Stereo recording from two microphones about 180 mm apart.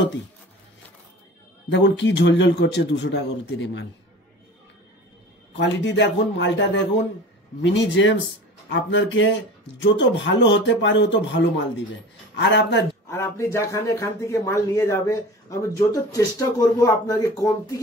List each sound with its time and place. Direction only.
1.7 s a man's voice: 85° left
5.6 s a man's voice: 80° left
13.1 s a man's voice: 15° left (ahead or behind)